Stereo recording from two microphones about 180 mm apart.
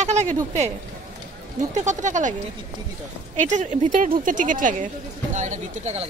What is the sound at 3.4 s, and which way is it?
Speech, 45° right (ahead or behind).